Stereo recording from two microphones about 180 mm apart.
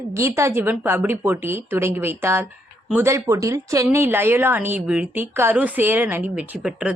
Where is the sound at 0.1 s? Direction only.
15° right (ahead or behind).